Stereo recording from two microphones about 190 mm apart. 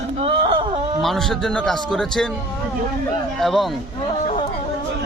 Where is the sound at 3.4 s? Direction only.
Centre (ahead or behind).